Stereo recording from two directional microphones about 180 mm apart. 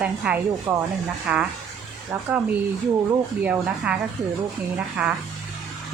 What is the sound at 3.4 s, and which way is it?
Speech, 10° right (ahead or behind).